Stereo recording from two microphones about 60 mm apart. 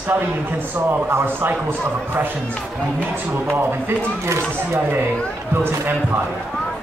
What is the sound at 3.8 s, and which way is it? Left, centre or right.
Speech, right.